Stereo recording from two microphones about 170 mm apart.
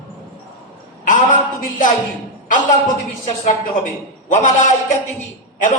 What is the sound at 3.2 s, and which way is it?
A man's voice, 45° left (ahead or behind).